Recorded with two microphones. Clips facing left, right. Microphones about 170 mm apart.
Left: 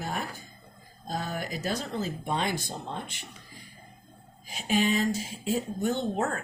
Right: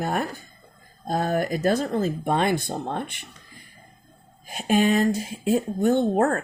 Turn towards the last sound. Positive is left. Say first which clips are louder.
# right 8 dB
turn(degrees=-50)  # may be behind; listen again after turning